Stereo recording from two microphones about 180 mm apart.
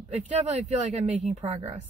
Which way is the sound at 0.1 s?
35° right (ahead or behind).